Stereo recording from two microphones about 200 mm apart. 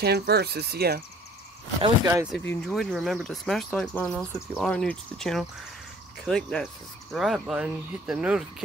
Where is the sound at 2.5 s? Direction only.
Centre (ahead or behind).